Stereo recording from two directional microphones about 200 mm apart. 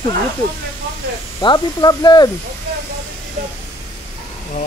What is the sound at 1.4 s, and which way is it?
Speech, 20° left (ahead or behind).